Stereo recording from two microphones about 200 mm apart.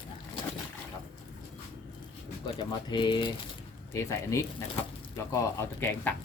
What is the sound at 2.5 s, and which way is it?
Speech, 20° left (ahead or behind).